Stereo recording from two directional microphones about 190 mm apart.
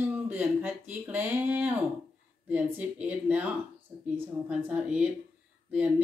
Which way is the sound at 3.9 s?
25° right (ahead or behind).